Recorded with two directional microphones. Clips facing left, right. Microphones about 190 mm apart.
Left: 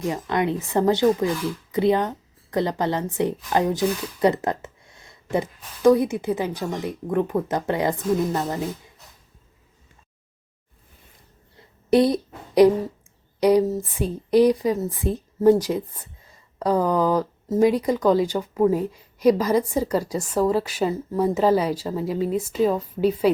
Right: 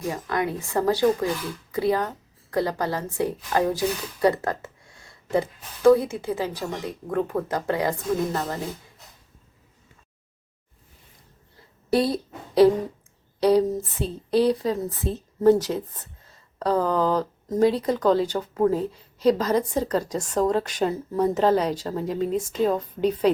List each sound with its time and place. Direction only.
0.1 s a woman's voice: 20° left (ahead or behind)
11.9 s a sound: 20° left (ahead or behind)
13.4 s a woman's voice: 10° left (ahead or behind)